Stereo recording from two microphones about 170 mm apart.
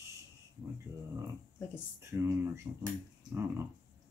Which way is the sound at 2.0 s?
15° right (ahead or behind).